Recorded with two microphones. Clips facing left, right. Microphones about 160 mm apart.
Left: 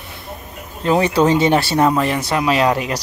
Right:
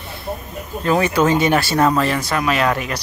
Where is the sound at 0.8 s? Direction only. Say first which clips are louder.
Left 2 dB; 25° left (ahead or behind).